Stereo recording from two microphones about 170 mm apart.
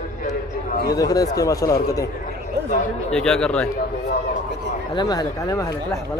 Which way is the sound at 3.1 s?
5° left (ahead or behind).